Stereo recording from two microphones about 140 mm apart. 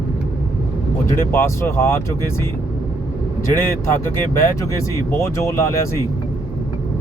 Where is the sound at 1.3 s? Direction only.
20° left (ahead or behind).